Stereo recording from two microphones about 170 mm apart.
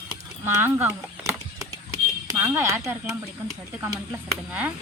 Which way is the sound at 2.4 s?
15° right (ahead or behind).